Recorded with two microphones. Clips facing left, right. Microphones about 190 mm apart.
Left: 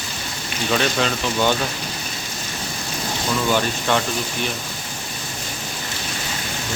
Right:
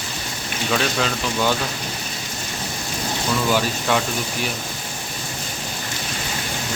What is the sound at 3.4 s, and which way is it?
Speech, 5° right (ahead or behind).